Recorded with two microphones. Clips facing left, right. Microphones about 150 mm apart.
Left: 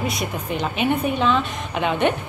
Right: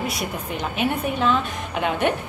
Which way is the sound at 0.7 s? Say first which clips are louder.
Left 2 dB; 5° right (ahead or behind).